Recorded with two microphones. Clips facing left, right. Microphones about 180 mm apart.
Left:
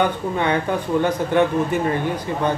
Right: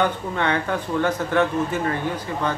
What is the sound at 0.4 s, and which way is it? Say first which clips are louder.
Speech: left 2 dB; 15° left (ahead or behind).